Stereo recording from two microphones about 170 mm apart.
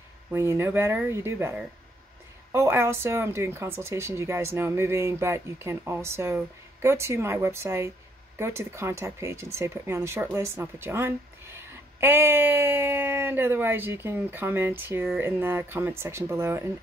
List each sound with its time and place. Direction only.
0.3 s speech: 15° right (ahead or behind)